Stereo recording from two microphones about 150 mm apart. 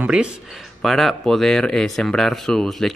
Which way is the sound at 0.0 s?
5° right (ahead or behind).